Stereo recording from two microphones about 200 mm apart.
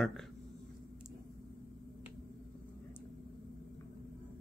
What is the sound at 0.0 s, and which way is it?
Speech, centre (ahead or behind).